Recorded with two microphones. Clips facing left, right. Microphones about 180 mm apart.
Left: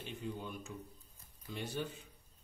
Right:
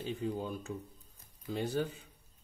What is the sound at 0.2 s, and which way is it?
Speech, 40° right (ahead or behind).